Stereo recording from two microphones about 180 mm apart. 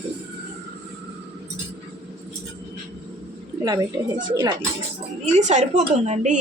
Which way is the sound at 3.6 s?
20° right (ahead or behind).